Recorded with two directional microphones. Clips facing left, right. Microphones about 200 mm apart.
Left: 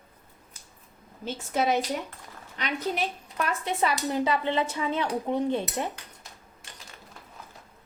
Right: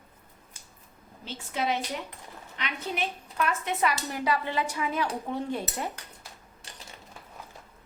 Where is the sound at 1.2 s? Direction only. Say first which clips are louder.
Left 4 dB; 45° left (ahead or behind); by 5.9 s 25° left (ahead or behind).